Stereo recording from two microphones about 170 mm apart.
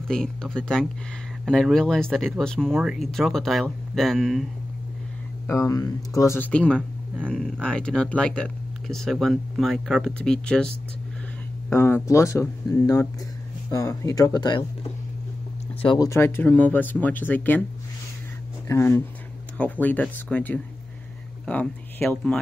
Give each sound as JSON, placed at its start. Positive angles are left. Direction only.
{"t": 0.1, "sound": "speech", "side_deg": 5}
{"t": 5.5, "sound": "speech", "side_deg": 20}
{"t": 11.7, "sound": "speech", "side_deg": 15}
{"t": 16.1, "sound": "speech", "side_deg": 15}
{"t": 18.7, "sound": "speech", "side_deg": 15}